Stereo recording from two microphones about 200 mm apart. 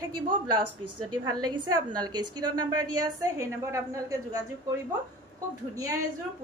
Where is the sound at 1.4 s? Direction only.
20° right (ahead or behind).